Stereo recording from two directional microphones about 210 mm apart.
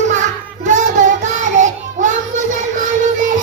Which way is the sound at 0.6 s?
35° right (ahead or behind).